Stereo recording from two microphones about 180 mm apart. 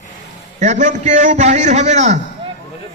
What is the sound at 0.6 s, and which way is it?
A man's voice, 40° right (ahead or behind).